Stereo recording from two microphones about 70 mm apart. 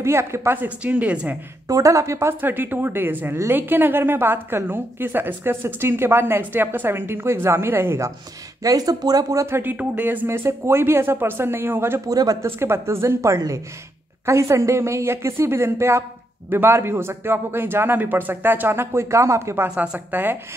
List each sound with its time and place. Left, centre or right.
0.0 s a woman's voice: right
0.6 s speech: right
1.7 s a woman's voice: right
2.4 s a woman's voice: right
8.6 s speech: right
9.5 s a woman's voice: right
10.2 s a woman's voice: right
12.1 s speech: right
12.4 s a woman's voice: right
19.7 s speech: centre
20.1 s speech: right